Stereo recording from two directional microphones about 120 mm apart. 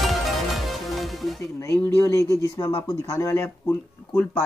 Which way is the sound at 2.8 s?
25° left (ahead or behind).